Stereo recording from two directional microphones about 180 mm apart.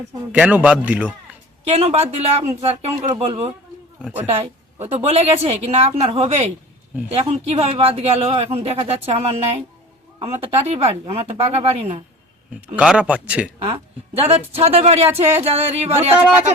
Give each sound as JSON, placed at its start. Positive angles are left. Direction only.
{"t": 0.3, "sound": "a man's voice", "side_deg": -5}
{"t": 1.7, "sound": "speech", "side_deg": -35}
{"t": 12.6, "sound": "a man's voice", "side_deg": -5}
{"t": 13.6, "sound": "speech", "side_deg": -35}